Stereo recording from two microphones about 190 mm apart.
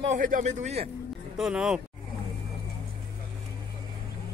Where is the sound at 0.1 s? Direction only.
40° right (ahead or behind).